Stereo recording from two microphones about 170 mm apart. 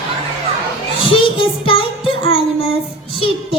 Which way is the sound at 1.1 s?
30° left (ahead or behind).